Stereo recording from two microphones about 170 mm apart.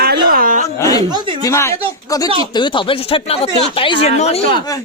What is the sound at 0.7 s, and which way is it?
Speech, 20° left (ahead or behind).